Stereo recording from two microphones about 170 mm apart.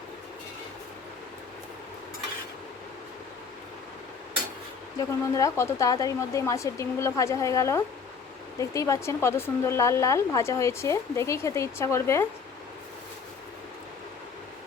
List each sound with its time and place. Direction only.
4.9 s a woman's voice: 20° left (ahead or behind)